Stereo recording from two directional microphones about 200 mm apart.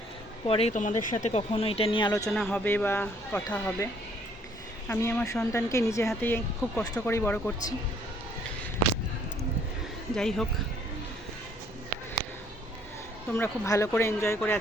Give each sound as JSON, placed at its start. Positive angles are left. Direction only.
{"t": 0.4, "sound": "a woman's voice", "side_deg": 30}
{"t": 2.3, "sound": "speech", "side_deg": 5}
{"t": 4.9, "sound": "speech", "side_deg": 15}
{"t": 10.2, "sound": "speech", "side_deg": 0}
{"t": 13.3, "sound": "speech", "side_deg": 15}